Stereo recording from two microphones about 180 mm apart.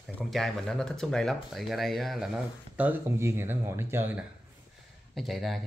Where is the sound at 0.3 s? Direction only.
Centre (ahead or behind).